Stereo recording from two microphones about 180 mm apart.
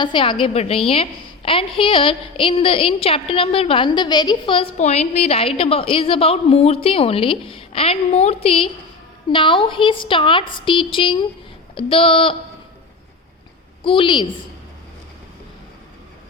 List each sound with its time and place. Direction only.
0.0 s a woman's voice: 25° left (ahead or behind)
13.8 s a woman's voice: 30° left (ahead or behind)